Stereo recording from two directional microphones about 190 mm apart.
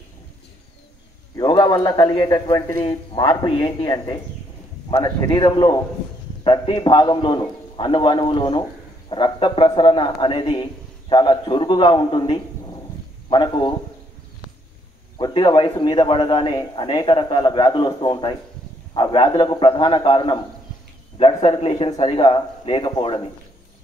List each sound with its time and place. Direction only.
1.3 s a man's voice: 20° left (ahead or behind)
15.1 s a man's voice: 25° left (ahead or behind)